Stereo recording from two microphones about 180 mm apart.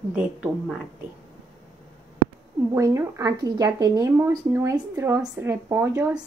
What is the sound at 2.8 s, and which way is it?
A woman's voice, 15° right (ahead or behind).